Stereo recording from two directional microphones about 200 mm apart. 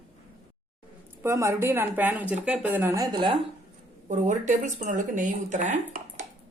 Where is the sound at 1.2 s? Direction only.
15° right (ahead or behind).